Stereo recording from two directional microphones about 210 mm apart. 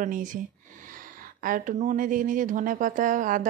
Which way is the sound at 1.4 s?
40° right (ahead or behind).